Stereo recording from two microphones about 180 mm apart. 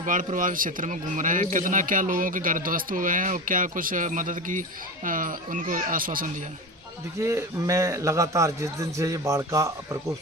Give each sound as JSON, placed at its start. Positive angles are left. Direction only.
{"t": 0.0, "sound": "a man's voice", "side_deg": -45}
{"t": 7.2, "sound": "a man's voice", "side_deg": -15}